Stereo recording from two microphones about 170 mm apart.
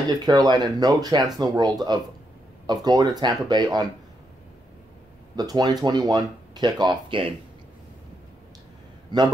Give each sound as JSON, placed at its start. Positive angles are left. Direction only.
{"t": 0.1, "sound": "speech", "side_deg": -25}
{"t": 5.3, "sound": "speech", "side_deg": -25}